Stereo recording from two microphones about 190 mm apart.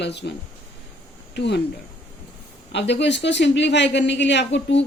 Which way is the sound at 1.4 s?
60° left (ahead or behind).